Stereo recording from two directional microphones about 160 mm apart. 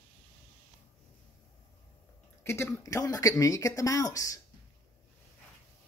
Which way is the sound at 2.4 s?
15° left (ahead or behind).